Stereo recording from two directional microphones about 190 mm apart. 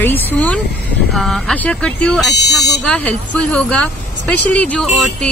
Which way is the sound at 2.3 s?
60° left (ahead or behind).